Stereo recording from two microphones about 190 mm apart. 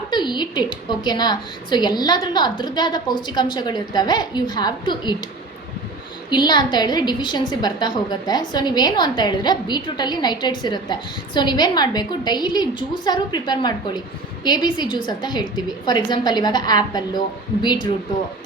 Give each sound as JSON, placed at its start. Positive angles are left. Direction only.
{"t": 0.1, "sound": "a woman's voice", "side_deg": 25}
{"t": 6.3, "sound": "a woman's voice", "side_deg": 25}